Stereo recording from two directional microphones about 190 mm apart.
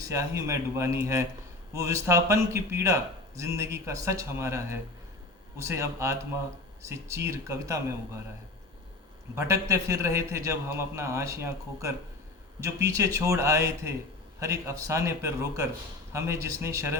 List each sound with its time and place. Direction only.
0.0 s a man's voice: 15° right (ahead or behind)
9.3 s a man's voice: 15° right (ahead or behind)